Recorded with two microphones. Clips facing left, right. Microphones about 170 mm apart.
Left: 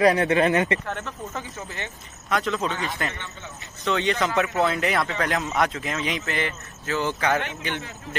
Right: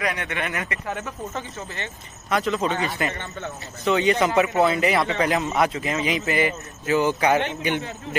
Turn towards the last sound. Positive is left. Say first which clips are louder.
# right 6 dB
turn(degrees=-20)  # may be behind; listen again after turning